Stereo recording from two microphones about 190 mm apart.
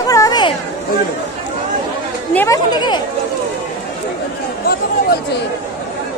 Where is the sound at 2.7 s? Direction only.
20° left (ahead or behind).